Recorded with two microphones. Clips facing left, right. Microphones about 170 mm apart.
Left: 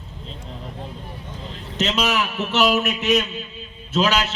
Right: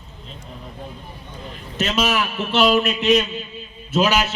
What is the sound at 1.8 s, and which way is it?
Speech, 20° left (ahead or behind).